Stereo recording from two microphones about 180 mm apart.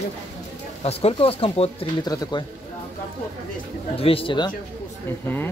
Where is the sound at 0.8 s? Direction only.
35° left (ahead or behind).